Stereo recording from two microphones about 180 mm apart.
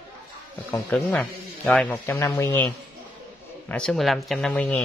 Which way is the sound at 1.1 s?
5° left (ahead or behind).